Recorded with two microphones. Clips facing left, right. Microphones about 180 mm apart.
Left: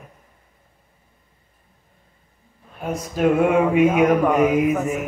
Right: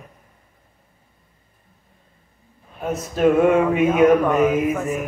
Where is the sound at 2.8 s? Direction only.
10° left (ahead or behind).